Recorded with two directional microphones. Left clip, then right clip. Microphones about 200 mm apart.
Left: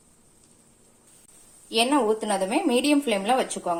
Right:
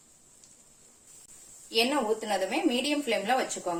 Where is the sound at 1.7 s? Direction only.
35° left (ahead or behind).